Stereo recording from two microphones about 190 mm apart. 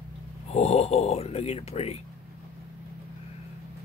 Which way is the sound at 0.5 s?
35° left (ahead or behind).